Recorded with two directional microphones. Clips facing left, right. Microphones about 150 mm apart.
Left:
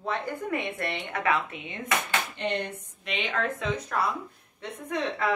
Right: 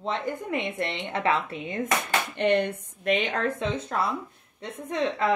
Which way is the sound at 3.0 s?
45° right (ahead or behind).